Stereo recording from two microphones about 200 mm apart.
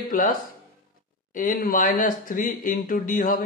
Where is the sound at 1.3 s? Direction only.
45° left (ahead or behind).